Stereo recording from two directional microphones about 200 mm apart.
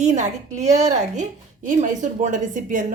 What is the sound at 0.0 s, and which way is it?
A woman's voice, 35° right (ahead or behind).